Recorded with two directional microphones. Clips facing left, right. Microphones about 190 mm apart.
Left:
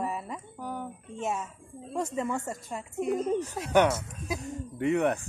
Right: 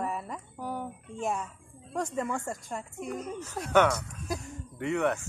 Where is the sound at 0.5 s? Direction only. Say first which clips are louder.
Right 2 dB; 10° right (ahead or behind).